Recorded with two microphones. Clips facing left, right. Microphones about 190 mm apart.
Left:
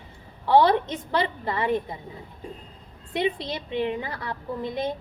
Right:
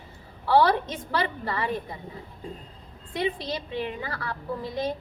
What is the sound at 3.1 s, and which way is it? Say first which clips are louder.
A woman's voice: left 2 dB; 20° left (ahead or behind).